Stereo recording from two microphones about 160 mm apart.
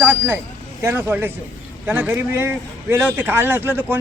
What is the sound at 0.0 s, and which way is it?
Speech, 15° right (ahead or behind).